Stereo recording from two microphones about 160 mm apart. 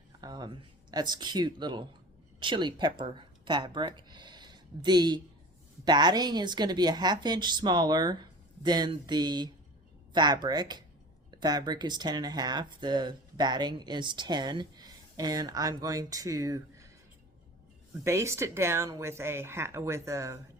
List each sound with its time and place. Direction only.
0.2 s speech: 25° right (ahead or behind)
18.0 s speech: 20° right (ahead or behind)